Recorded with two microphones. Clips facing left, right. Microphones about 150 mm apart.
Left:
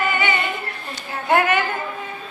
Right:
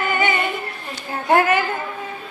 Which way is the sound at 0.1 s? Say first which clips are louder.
Right 2 dB; 45° right (ahead or behind).